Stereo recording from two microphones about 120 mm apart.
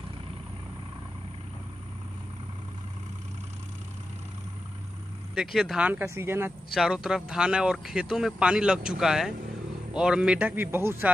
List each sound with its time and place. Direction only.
5.3 s speech: 5° right (ahead or behind)
6.0 s speech: 20° right (ahead or behind)
6.7 s a man's voice: centre (ahead or behind); by 11.1 s 20° right (ahead or behind)